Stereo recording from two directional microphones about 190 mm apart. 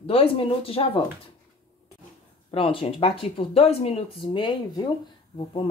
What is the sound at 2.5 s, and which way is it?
Speech, 30° left (ahead or behind).